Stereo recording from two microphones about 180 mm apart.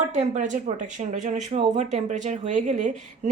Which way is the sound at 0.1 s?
40° right (ahead or behind).